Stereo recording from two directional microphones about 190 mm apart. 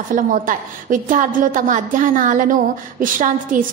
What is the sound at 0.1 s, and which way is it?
A woman's voice, 45° right (ahead or behind).